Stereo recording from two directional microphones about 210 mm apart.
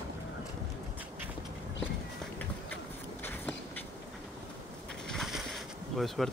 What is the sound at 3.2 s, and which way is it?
Walk, 10° left (ahead or behind).